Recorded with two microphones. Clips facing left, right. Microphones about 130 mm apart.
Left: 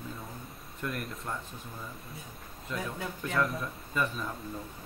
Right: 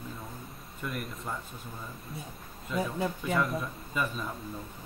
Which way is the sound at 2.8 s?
30° right (ahead or behind).